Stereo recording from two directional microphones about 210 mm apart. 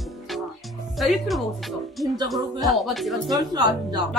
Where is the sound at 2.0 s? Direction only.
15° right (ahead or behind).